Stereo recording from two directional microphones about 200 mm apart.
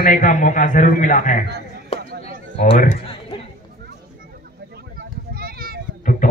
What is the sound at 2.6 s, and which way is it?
Speech, 35° left (ahead or behind).